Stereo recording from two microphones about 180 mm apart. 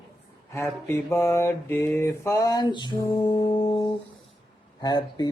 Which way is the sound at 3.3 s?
30° left (ahead or behind).